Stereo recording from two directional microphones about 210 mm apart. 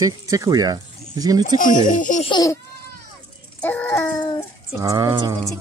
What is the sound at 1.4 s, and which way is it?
Speech, 40° left (ahead or behind).